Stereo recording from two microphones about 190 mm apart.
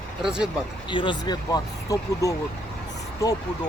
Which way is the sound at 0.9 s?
25° left (ahead or behind).